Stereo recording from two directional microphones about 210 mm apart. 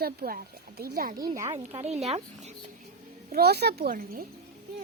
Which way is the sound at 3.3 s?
50° right (ahead or behind).